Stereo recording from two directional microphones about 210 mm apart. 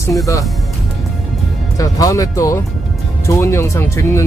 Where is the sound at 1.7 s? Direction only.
15° left (ahead or behind).